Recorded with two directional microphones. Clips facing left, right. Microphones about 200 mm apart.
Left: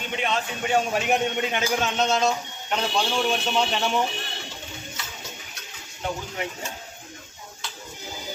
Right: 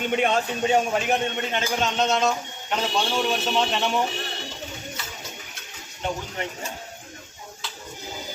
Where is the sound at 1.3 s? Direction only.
10° left (ahead or behind).